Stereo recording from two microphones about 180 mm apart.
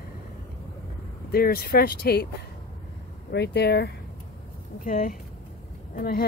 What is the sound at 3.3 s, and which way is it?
Speech, 65° left (ahead or behind).